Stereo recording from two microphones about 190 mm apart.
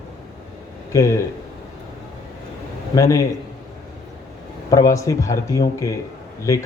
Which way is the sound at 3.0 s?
15° left (ahead or behind).